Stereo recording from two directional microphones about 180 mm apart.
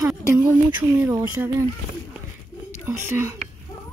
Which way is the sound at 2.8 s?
15° right (ahead or behind).